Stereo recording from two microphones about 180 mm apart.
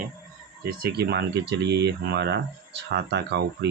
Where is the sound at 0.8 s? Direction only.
65° right (ahead or behind).